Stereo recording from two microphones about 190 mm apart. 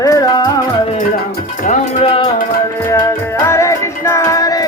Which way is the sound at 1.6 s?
35° left (ahead or behind).